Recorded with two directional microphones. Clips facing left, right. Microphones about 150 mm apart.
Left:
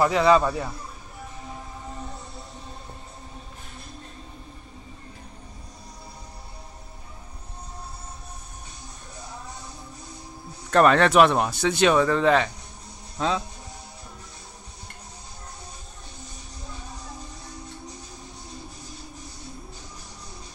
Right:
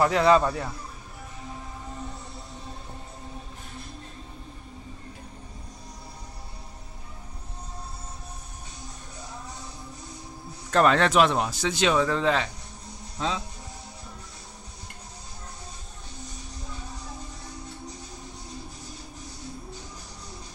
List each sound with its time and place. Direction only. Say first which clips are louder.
0.0 s a man's voice: left 1 dB; 5° left (ahead or behind)
10.7 s speech: left 3 dB; 55° left (ahead or behind)